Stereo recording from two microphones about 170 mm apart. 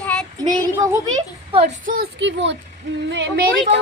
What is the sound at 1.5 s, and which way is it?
Speech, 40° right (ahead or behind).